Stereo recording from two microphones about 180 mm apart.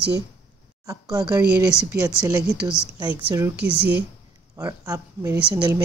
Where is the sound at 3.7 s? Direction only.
65° right (ahead or behind).